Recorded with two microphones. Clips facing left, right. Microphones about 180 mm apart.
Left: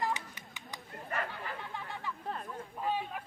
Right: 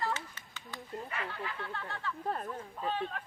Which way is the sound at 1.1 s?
50° left (ahead or behind).